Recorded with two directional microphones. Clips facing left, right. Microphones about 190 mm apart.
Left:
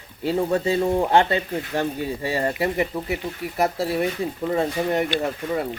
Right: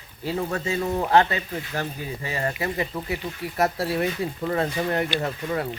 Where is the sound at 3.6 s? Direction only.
10° left (ahead or behind).